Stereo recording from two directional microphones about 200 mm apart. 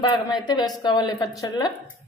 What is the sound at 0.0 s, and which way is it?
Speech, 25° left (ahead or behind).